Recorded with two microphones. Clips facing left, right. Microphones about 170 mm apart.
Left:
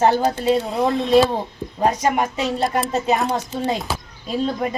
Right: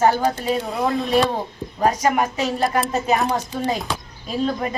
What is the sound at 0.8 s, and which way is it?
Music, centre (ahead or behind).